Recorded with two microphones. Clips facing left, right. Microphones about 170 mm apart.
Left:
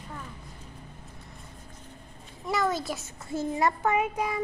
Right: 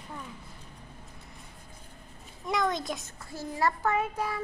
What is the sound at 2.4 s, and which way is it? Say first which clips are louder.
Speech: left 1 dB; 5° left (ahead or behind).